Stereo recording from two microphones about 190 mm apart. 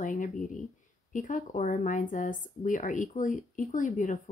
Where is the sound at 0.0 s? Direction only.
45° left (ahead or behind).